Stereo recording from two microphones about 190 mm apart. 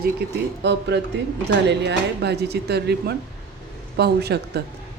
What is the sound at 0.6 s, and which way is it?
Speech, 65° right (ahead or behind).